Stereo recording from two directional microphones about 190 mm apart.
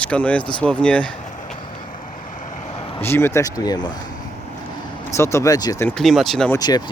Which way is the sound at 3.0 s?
10° left (ahead or behind).